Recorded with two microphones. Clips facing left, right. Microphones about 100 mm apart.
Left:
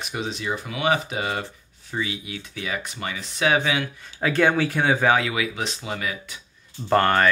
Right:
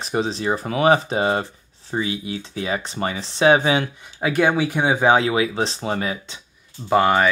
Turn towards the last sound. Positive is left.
turn(degrees=-10)  # may be behind; listen again after turning